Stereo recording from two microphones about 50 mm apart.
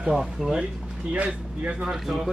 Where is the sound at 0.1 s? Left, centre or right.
Centre.